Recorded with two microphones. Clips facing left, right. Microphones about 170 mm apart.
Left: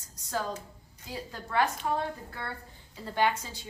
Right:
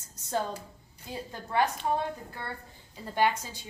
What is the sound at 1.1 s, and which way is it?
Speech, 20° right (ahead or behind).